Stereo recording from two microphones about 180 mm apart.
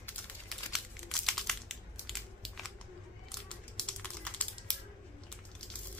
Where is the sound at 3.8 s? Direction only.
5° left (ahead or behind).